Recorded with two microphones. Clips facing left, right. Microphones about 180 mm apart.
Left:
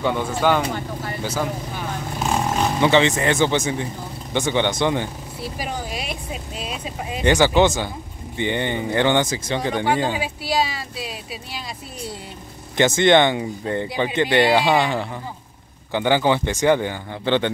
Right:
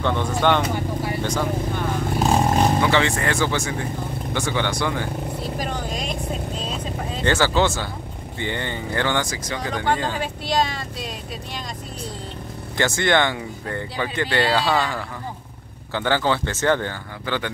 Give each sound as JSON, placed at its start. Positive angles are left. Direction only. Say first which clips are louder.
{"t": 0.0, "sound": "speech", "louder": "even", "side_deg": 10}
{"t": 2.8, "sound": "speech", "louder": "left 3 dB", "side_deg": 20}
{"t": 5.6, "sound": "speech", "louder": "left 2 dB", "side_deg": 10}
{"t": 9.9, "sound": "speech", "louder": "left 3 dB", "side_deg": 10}
{"t": 12.7, "sound": "speech", "louder": "left 5 dB", "side_deg": 20}
{"t": 17.2, "sound": "speech", "louder": "left 7 dB", "side_deg": 25}